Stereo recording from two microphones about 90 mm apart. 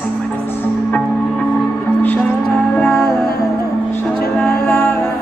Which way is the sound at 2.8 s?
15° left (ahead or behind).